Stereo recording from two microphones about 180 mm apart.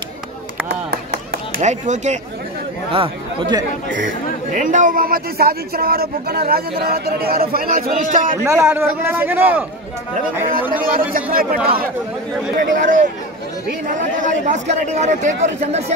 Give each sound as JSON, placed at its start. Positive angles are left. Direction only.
{"t": 1.6, "sound": "a man's voice", "side_deg": -40}
{"t": 2.9, "sound": "speech", "side_deg": -30}
{"t": 3.9, "sound": "speech", "side_deg": -50}
{"t": 8.5, "sound": "a man's voice", "side_deg": -15}
{"t": 10.7, "sound": "speech", "side_deg": -50}
{"t": 14.2, "sound": "a man's voice", "side_deg": -40}